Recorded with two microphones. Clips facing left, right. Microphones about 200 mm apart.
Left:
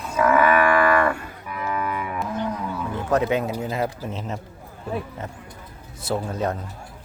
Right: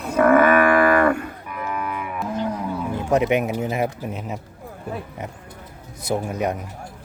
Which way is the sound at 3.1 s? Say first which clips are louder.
Right 2 dB; 20° right (ahead or behind).